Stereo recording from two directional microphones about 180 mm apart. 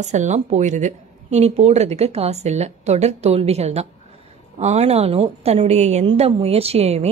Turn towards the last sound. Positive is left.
turn(degrees=-35)  # may be behind; listen again after turning